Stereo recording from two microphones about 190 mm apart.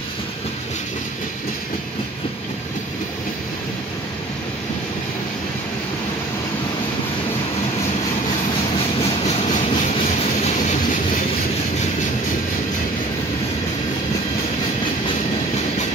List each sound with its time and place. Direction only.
9.2 s train: 35° left (ahead or behind)